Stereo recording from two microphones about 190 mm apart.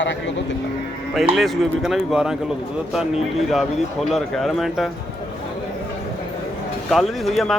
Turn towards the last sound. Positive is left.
turn(degrees=0)  # may be behind; listen again after turning